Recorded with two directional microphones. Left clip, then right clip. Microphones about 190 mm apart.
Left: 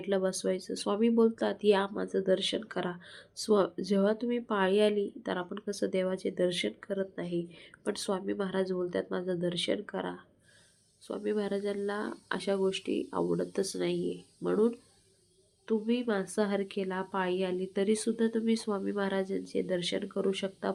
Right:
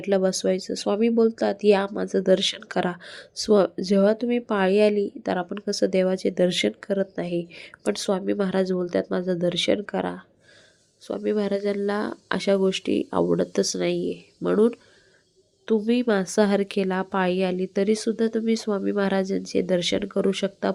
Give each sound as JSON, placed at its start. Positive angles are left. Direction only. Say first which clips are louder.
{"t": 0.0, "sound": "speech", "louder": "right 8 dB", "side_deg": -30}